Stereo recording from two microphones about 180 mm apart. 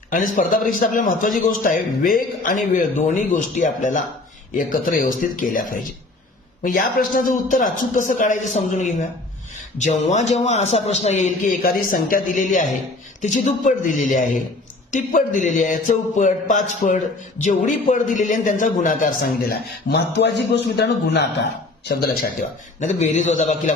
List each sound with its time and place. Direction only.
0.1 s a man's voice: 45° left (ahead or behind); by 21.2 s 70° left (ahead or behind)
22.8 s speech: 45° left (ahead or behind)